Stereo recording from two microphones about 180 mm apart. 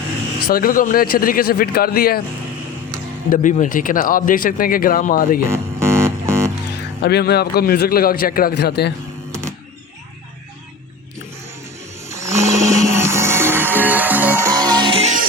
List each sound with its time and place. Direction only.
0.3 s a man's voice: 55° left (ahead or behind)
3.2 s speech: 45° left (ahead or behind)
5.5 s music: 15° right (ahead or behind)
7.0 s a man's voice: 65° left (ahead or behind)
12.0 s music: 15° right (ahead or behind)
14.5 s music: 25° right (ahead or behind)